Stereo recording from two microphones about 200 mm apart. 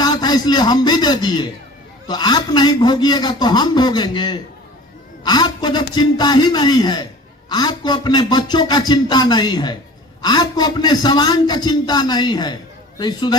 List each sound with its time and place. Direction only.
0.0 s a man's voice: 20° left (ahead or behind)